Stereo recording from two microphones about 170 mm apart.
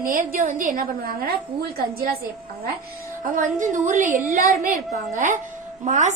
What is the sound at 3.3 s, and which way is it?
A woman's voice, 50° right (ahead or behind).